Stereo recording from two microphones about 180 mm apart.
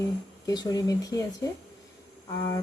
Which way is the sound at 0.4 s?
20° left (ahead or behind).